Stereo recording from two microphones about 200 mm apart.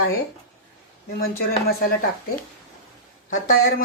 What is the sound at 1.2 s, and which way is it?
Speech, 50° left (ahead or behind).